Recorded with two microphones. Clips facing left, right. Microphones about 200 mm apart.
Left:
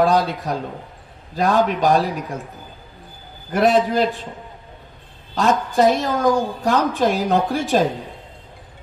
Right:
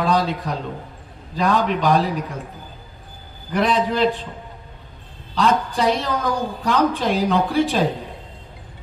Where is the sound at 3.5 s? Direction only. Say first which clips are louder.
Left 3 dB; 45° left (ahead or behind).